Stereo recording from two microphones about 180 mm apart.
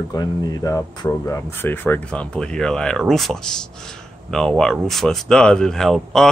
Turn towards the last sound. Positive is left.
turn(degrees=0)  # may be behind; listen again after turning